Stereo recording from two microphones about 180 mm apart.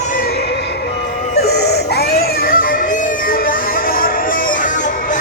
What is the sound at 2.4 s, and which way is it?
Music, 55° left (ahead or behind).